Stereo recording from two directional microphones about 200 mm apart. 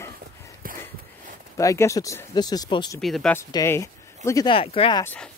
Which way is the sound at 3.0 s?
Centre (ahead or behind).